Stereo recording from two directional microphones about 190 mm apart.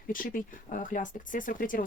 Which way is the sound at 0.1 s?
45° left (ahead or behind).